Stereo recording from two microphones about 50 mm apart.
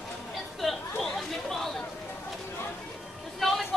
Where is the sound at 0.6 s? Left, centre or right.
Centre.